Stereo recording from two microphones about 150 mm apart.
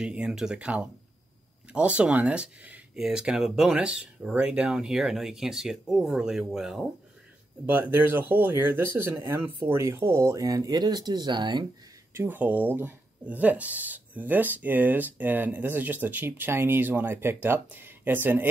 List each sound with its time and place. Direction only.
0.0 s speech: 5° right (ahead or behind)
7.6 s speech: 15° right (ahead or behind); by 11.6 s 30° right (ahead or behind)
12.1 s speech: 15° right (ahead or behind)